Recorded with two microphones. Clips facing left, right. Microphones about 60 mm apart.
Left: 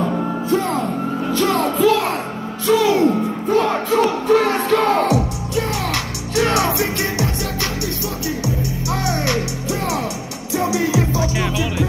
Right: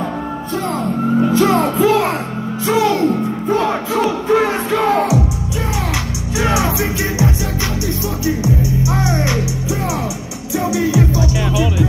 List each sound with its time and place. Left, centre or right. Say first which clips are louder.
1.3 s music: right 4 dB; centre
3.4 s music: even; centre
6.3 s music: even; centre
9.0 s music: right 2 dB; right
10.6 s music: right 2 dB; centre